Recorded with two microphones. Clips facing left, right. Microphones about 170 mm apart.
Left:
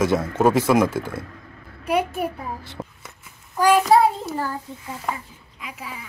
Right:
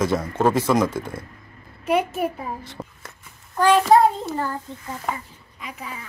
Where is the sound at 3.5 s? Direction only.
5° left (ahead or behind).